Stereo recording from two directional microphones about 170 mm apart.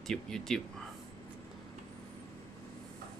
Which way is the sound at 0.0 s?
Centre (ahead or behind).